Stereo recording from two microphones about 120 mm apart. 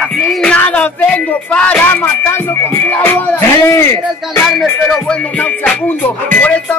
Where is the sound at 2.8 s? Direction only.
20° left (ahead or behind).